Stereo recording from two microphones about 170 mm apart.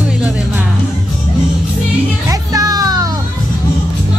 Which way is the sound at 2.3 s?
20° right (ahead or behind).